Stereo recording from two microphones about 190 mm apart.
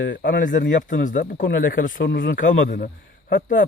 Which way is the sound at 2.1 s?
70° left (ahead or behind).